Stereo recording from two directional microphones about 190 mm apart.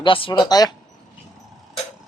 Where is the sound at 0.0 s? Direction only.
25° left (ahead or behind).